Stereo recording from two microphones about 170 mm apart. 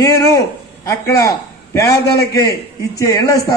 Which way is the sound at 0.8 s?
20° left (ahead or behind).